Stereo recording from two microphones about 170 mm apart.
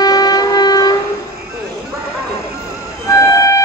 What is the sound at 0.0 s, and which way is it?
Train, 25° left (ahead or behind).